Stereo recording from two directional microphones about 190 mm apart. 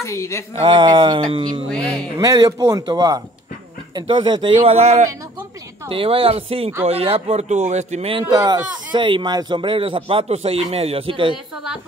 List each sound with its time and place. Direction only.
0.0 s speech: 15° left (ahead or behind)
0.6 s speech: 25° right (ahead or behind)
1.7 s speech: 5° left (ahead or behind)
2.1 s speech: 20° right (ahead or behind)